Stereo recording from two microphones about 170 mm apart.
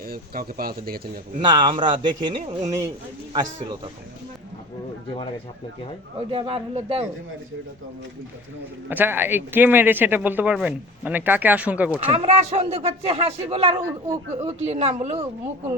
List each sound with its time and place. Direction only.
0.0 s speech: 60° right (ahead or behind)
1.4 s a man's voice: 30° right (ahead or behind)
6.1 s speech: 30° right (ahead or behind)
8.9 s speech: 10° right (ahead or behind)
12.2 s speech: 40° right (ahead or behind)